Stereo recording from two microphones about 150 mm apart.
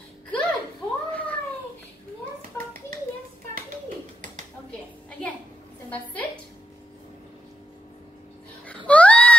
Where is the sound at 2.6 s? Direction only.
15° left (ahead or behind).